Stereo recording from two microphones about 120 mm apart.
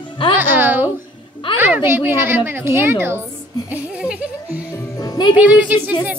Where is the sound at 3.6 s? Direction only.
10° right (ahead or behind).